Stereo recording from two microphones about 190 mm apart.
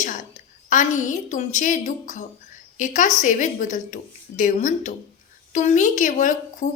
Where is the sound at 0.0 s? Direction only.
40° left (ahead or behind).